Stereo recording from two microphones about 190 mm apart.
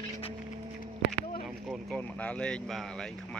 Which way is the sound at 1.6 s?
5° left (ahead or behind).